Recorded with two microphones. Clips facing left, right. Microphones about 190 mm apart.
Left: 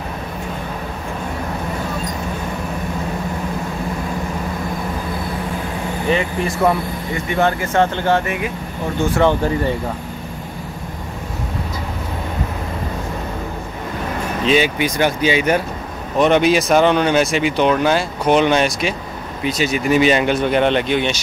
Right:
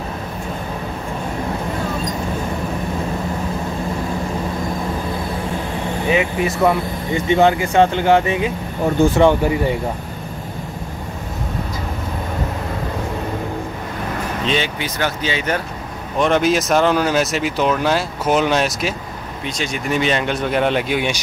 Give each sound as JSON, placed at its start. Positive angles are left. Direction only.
{"t": 6.0, "sound": "speech", "side_deg": -5}
{"t": 7.2, "sound": "speech", "side_deg": -15}
{"t": 14.4, "sound": "speech", "side_deg": 10}
{"t": 16.2, "sound": "speech", "side_deg": 0}